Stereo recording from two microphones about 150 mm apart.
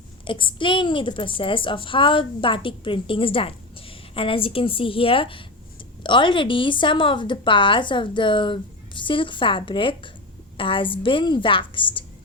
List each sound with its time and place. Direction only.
0.3 s a woman's voice: 35° left (ahead or behind)